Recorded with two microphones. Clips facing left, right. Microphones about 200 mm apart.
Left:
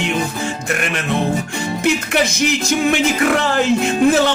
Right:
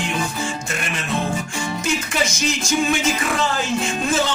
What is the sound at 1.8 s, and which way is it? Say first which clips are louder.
Music: left 7 dB; 65° left (ahead or behind).